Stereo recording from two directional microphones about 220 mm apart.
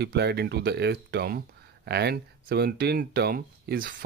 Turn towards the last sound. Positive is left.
turn(degrees=-40)  # may be behind; listen again after turning